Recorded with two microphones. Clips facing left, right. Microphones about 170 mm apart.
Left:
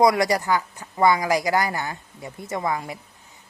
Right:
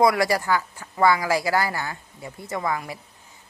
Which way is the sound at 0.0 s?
20° left (ahead or behind).